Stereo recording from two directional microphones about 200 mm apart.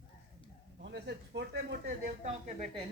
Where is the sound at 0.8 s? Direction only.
60° right (ahead or behind).